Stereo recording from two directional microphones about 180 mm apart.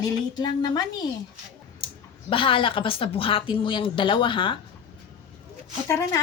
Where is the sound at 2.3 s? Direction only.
30° left (ahead or behind).